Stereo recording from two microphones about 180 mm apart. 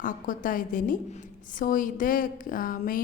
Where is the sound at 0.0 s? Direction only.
50° left (ahead or behind).